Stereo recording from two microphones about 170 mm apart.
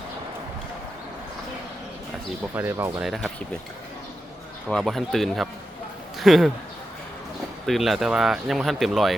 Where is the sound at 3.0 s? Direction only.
Centre (ahead or behind).